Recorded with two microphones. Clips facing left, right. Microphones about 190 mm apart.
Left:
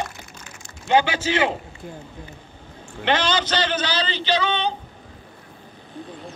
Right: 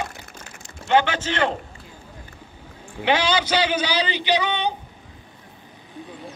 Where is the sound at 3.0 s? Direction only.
10° right (ahead or behind).